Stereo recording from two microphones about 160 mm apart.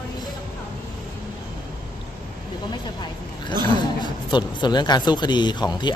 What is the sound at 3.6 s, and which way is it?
Speech, 30° left (ahead or behind).